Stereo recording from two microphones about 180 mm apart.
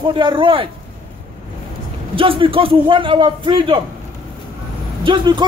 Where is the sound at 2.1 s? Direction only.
30° right (ahead or behind).